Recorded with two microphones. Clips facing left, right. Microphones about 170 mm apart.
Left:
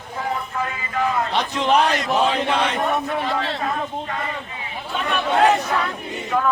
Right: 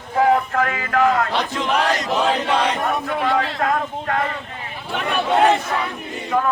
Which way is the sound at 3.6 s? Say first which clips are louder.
Right 4 dB; 80° right.